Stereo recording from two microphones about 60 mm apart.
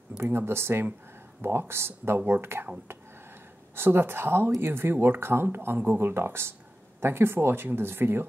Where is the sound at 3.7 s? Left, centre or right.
Right.